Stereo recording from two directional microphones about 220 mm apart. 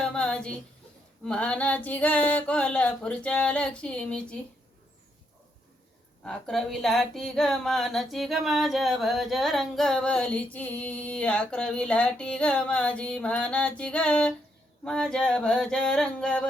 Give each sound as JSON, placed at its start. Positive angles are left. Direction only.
{"t": 0.0, "sound": "a sound", "side_deg": 5}
{"t": 1.2, "sound": "speech", "side_deg": 5}
{"t": 6.2, "sound": "speech", "side_deg": 0}